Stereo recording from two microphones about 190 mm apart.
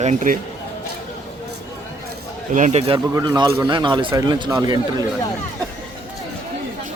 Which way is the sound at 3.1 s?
20° right (ahead or behind).